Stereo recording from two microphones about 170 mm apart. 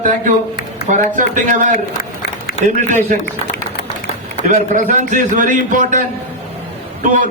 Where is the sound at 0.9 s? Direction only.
50° right (ahead or behind).